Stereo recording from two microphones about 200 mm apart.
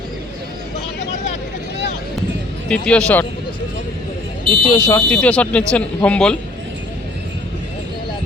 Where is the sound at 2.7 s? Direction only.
5° left (ahead or behind).